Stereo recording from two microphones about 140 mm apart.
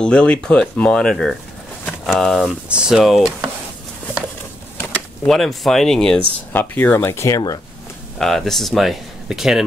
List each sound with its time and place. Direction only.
0.0 s speech: 5° left (ahead or behind)
5.2 s speech: 5° left (ahead or behind)
6.5 s speech: 15° left (ahead or behind)
8.2 s speech: 5° left (ahead or behind)